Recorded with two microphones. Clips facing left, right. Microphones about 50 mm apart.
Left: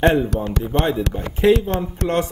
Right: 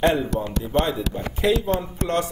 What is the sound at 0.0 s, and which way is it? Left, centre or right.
Speech, left.